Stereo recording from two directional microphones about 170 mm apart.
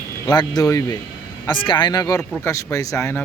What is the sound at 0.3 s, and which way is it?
Speech, 25° left (ahead or behind).